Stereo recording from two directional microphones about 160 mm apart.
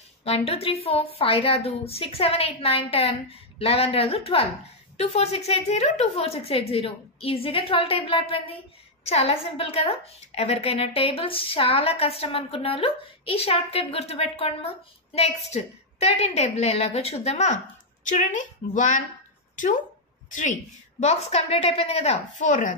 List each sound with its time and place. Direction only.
0.2 s a woman's voice: 40° left (ahead or behind)